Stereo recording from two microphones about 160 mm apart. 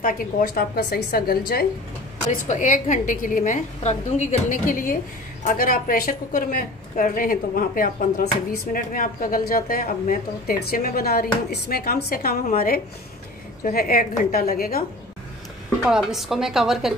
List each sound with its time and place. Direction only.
0.0 s a woman's voice: 60° left (ahead or behind)
2.4 s a woman's voice: 50° left (ahead or behind); by 14.9 s 70° left (ahead or behind)
15.8 s a woman's voice: centre (ahead or behind)